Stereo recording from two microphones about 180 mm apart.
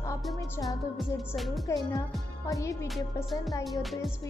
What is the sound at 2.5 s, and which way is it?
Speech, 15° left (ahead or behind).